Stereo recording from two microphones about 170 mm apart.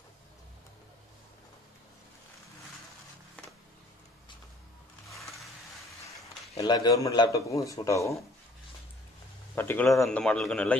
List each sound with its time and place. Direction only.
5.0 s sewing machine: centre (ahead or behind)
6.5 s speech: 20° left (ahead or behind)
9.6 s a man's voice: 10° left (ahead or behind)